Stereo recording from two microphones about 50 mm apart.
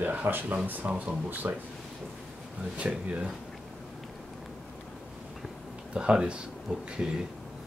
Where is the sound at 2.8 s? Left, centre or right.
Right.